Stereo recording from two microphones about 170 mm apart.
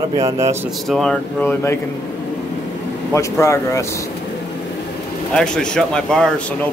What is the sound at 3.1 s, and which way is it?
Speech, 15° left (ahead or behind).